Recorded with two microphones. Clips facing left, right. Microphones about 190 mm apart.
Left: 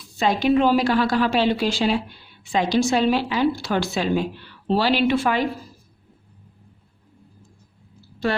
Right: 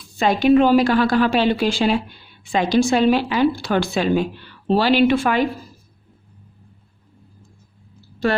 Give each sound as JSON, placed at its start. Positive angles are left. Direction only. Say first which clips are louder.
{"t": 0.2, "sound": "a woman's voice", "louder": "right 4 dB", "side_deg": -60}